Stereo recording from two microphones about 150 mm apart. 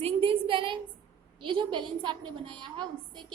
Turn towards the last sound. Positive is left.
turn(degrees=-30)  # may be behind; listen again after turning